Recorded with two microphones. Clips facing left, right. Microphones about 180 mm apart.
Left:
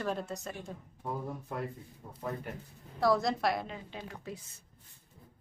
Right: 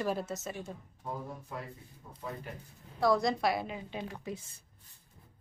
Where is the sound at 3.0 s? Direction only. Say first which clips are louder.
Even; centre (ahead or behind); by 4.4 s 15° right (ahead or behind).